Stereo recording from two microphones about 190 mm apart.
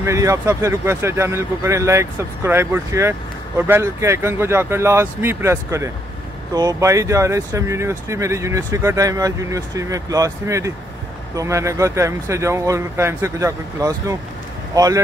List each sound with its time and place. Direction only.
0.0 s speech: 15° right (ahead or behind)